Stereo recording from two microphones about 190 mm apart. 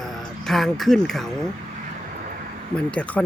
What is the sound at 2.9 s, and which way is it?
Speech, 5° left (ahead or behind).